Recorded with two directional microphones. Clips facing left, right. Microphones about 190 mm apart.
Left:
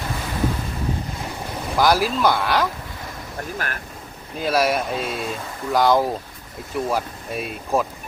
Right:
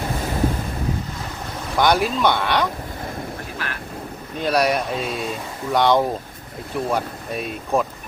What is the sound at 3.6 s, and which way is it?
Vehicle, 45° left (ahead or behind).